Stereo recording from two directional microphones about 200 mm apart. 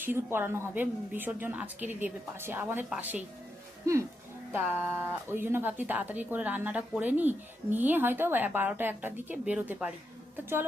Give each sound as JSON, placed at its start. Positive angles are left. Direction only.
{"t": 0.0, "sound": "speech", "side_deg": -10}